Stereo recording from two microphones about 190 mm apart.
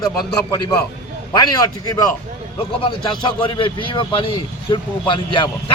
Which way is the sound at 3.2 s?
25° left (ahead or behind).